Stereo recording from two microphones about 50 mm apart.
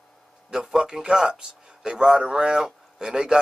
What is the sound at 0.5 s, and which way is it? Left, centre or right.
A man's voice, centre.